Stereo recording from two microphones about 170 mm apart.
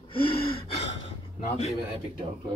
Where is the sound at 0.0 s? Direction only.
30° left (ahead or behind).